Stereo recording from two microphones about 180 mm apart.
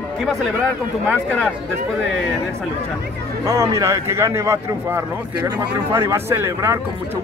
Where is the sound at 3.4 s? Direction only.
15° right (ahead or behind).